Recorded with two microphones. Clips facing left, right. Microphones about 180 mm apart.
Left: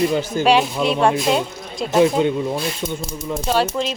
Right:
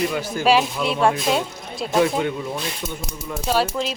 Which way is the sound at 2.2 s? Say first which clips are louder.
Left 5 dB; 25° left (ahead or behind).